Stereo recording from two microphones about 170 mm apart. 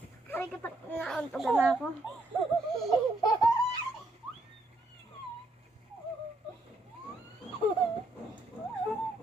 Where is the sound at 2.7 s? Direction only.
Centre (ahead or behind).